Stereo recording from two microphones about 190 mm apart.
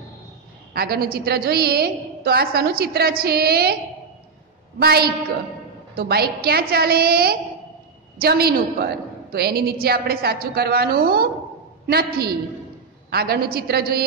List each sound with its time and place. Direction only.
0.7 s a woman's voice: 55° right (ahead or behind)
4.7 s a woman's voice: 55° right (ahead or behind)